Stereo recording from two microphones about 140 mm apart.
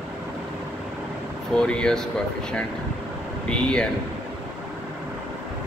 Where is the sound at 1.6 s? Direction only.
5° left (ahead or behind).